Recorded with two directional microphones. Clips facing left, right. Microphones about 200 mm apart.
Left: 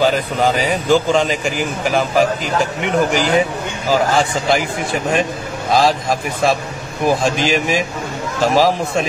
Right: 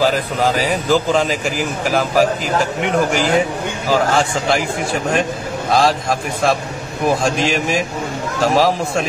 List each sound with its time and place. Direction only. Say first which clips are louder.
0.0 s a man's voice: left 1 dB; centre (ahead or behind)